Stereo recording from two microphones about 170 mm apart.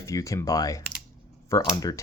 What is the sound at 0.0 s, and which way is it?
Speech, 20° left (ahead or behind).